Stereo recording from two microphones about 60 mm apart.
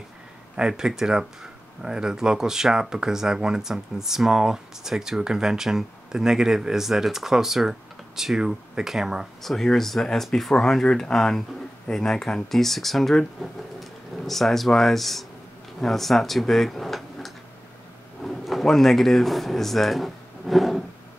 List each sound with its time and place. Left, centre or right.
0.6 s speech: centre
9.4 s speech: centre